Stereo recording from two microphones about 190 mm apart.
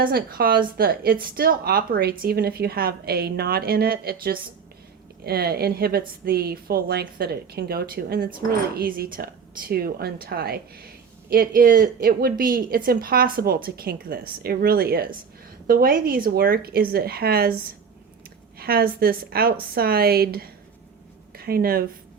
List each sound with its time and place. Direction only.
0.0 s a woman's voice: 50° right (ahead or behind)